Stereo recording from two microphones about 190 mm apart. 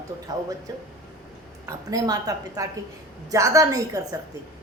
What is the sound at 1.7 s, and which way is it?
A woman's voice, 20° right (ahead or behind).